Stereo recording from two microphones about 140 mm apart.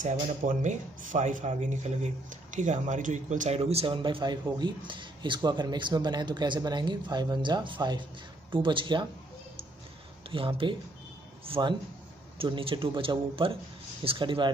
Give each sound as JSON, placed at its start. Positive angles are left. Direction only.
{"t": 0.0, "sound": "speech", "side_deg": -65}
{"t": 10.3, "sound": "speech", "side_deg": -40}